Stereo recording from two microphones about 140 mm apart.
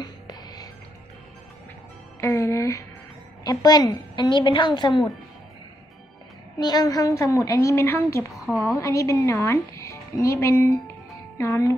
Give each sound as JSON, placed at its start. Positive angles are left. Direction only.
{"t": 0.0, "sound": "music", "side_deg": 30}
{"t": 2.1, "sound": "music", "side_deg": 20}
{"t": 3.4, "sound": "a woman's voice", "side_deg": 25}
{"t": 6.6, "sound": "speech", "side_deg": 30}
{"t": 8.3, "sound": "a woman's voice", "side_deg": 0}
{"t": 8.7, "sound": "speech", "side_deg": 20}